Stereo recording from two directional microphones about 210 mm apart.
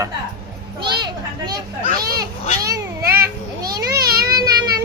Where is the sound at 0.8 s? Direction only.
20° right (ahead or behind).